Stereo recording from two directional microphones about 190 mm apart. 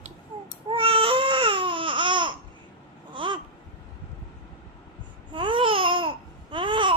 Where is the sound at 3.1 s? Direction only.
25° right (ahead or behind).